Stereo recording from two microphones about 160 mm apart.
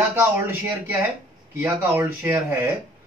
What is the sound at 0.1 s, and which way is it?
Speech, 15° right (ahead or behind).